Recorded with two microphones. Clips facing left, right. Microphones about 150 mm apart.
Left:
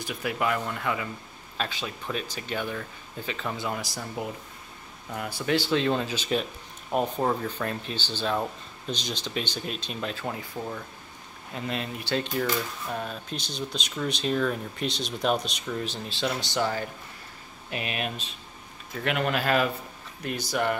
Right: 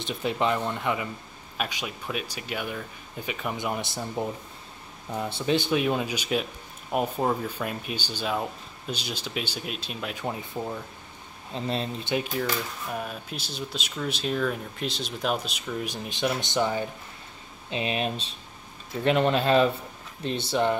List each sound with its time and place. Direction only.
0.0 s speech: 25° right (ahead or behind); by 10.1 s 5° right (ahead or behind)
10.1 s speech: 15° right (ahead or behind)
11.5 s speech: 30° right (ahead or behind)
12.4 s speech: 5° right (ahead or behind)
15.8 s speech: 15° right (ahead or behind)